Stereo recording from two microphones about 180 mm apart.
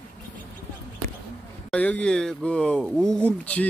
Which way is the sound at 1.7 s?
10° left (ahead or behind).